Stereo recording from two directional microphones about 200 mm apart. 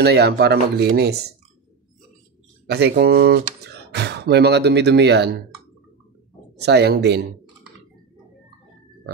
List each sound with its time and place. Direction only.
0.0 s speech: 55° right (ahead or behind)
2.6 s speech: 55° right (ahead or behind)
6.6 s speech: 55° right (ahead or behind)